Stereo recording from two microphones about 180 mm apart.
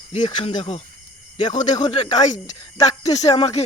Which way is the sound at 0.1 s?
30° left (ahead or behind).